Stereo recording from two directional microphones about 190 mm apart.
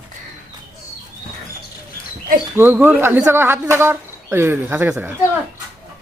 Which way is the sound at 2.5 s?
10° right (ahead or behind).